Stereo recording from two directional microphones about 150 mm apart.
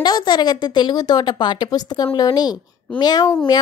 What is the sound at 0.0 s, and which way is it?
Speech, 30° left (ahead or behind).